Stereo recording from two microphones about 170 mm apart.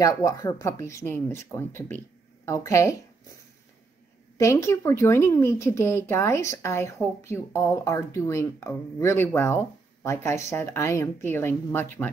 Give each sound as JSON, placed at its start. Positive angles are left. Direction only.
{"t": 0.0, "sound": "speech", "side_deg": 20}
{"t": 4.4, "sound": "speech", "side_deg": 15}